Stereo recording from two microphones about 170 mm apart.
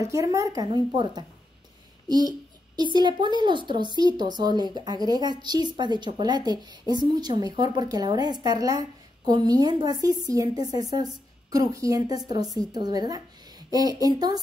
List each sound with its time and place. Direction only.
0.0 s a woman's voice: 20° right (ahead or behind)